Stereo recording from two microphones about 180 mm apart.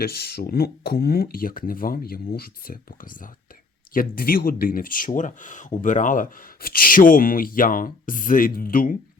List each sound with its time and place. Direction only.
0.0 s speech: 60° left (ahead or behind)